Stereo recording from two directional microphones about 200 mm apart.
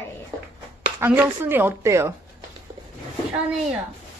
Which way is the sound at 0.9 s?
10° right (ahead or behind).